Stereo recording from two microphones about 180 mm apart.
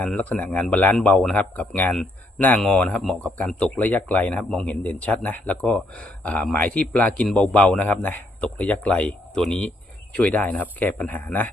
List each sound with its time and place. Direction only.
0.0 s speech: 5° left (ahead or behind)